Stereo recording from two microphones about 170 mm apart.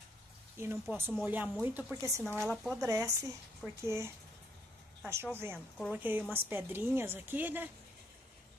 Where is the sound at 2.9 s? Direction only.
20° right (ahead or behind).